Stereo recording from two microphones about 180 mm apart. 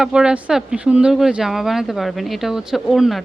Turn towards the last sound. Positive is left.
turn(degrees=0)  # may be behind; listen again after turning